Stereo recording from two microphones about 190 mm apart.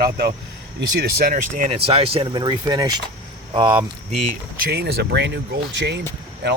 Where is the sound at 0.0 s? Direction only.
55° right (ahead or behind).